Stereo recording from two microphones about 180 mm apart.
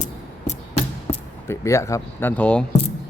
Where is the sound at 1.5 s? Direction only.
15° left (ahead or behind).